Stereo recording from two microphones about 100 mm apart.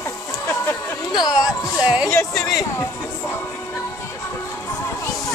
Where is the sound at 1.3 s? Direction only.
10° right (ahead or behind).